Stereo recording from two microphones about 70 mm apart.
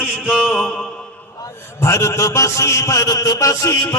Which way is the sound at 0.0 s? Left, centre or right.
Centre.